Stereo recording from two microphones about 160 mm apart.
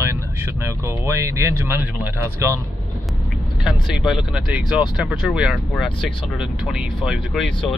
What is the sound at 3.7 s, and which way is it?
Speech, 5° right (ahead or behind).